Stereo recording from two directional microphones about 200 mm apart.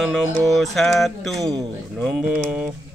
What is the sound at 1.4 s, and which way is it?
Speech, 20° right (ahead or behind).